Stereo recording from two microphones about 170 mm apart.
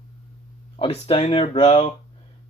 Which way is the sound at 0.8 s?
35° left (ahead or behind).